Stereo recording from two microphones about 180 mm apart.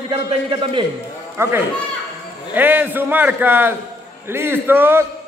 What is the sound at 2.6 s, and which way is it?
Speech, 10° right (ahead or behind).